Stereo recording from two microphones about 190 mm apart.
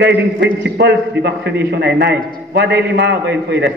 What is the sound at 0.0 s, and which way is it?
A man's voice, 65° right (ahead or behind).